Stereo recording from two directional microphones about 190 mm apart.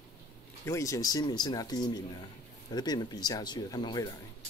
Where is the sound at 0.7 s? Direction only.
15° left (ahead or behind).